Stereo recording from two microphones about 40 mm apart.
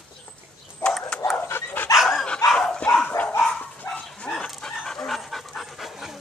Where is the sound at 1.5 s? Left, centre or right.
Left.